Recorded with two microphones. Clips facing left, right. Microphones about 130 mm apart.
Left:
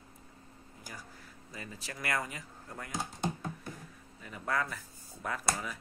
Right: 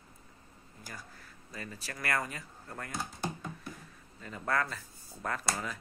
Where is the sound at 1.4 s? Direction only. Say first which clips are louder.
Right 1 dB; 15° left (ahead or behind).